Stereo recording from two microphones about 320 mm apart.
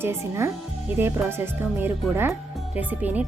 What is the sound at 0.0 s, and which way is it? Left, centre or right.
Speech, centre.